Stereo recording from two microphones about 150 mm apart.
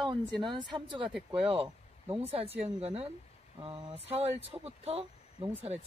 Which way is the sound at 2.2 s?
40° right (ahead or behind).